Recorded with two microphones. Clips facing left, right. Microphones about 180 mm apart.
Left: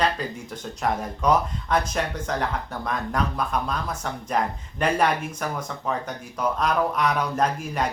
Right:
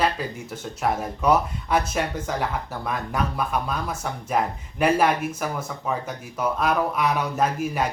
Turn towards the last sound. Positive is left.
turn(degrees=-5)  # may be behind; listen again after turning